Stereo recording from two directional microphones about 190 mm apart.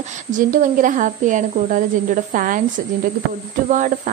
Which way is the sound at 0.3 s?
45° right (ahead or behind).